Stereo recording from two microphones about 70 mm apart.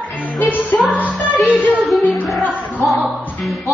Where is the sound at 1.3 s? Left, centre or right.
Centre.